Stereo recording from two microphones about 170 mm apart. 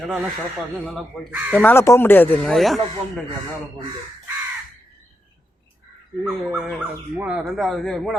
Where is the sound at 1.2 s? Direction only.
5° right (ahead or behind).